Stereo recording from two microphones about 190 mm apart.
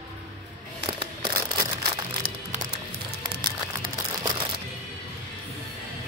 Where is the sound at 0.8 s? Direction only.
25° right (ahead or behind).